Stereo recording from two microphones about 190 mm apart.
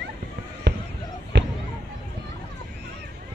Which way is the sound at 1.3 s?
65° right (ahead or behind).